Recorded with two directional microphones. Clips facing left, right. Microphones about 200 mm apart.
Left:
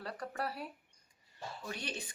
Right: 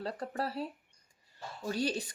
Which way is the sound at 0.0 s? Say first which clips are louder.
Right 4 dB; 30° right (ahead or behind).